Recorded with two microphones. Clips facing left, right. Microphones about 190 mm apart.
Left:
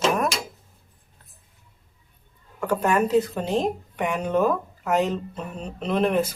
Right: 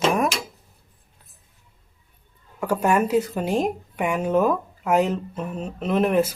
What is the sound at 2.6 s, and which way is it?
Speech, 10° right (ahead or behind).